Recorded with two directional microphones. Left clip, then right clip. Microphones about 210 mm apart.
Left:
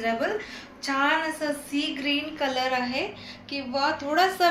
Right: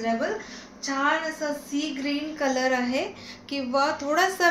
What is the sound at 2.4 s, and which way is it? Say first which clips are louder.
A woman's voice: right 5 dB; 40° right (ahead or behind).